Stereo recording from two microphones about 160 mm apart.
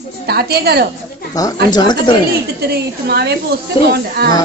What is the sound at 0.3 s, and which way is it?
Speech, 80° right.